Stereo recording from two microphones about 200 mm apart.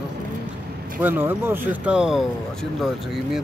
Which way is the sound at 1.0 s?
10° right (ahead or behind).